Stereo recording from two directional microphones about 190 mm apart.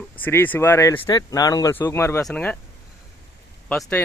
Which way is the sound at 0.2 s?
10° left (ahead or behind).